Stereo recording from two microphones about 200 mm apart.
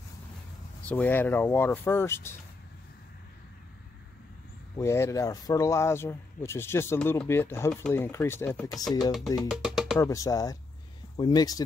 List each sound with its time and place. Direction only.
0.8 s speech: 10° left (ahead or behind)
4.7 s speech: 15° left (ahead or behind); by 9.9 s centre (ahead or behind)
9.9 s speech: 15° left (ahead or behind)